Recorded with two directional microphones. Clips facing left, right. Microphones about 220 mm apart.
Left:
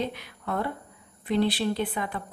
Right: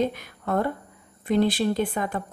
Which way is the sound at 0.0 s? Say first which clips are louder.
Right 6 dB; 45° right (ahead or behind).